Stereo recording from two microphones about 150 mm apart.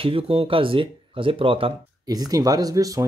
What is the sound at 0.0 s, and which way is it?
Speech, 35° right (ahead or behind).